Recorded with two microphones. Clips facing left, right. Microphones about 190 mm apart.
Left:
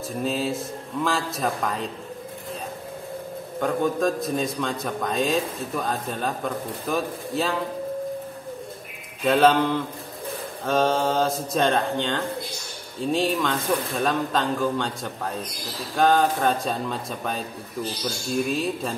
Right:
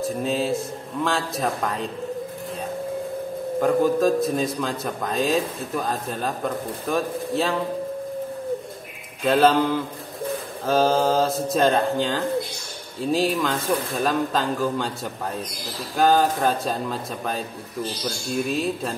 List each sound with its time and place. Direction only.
0.0 s a man's voice: centre (ahead or behind)
3.6 s a man's voice: centre (ahead or behind)
9.2 s a man's voice: centre (ahead or behind)
16.0 s a man's voice: 5° right (ahead or behind)